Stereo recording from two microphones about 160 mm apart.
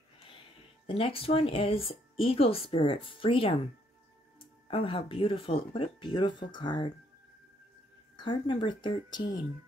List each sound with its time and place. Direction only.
0.8 s speech: 35° left (ahead or behind)
8.2 s speech: 30° left (ahead or behind)